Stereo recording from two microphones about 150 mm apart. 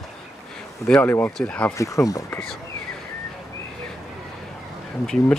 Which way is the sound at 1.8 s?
20° left (ahead or behind).